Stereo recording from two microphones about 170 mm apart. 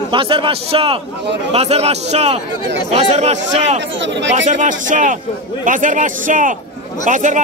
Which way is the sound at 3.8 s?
90° right.